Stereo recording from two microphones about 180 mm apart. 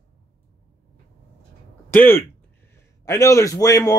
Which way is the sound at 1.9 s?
10° left (ahead or behind).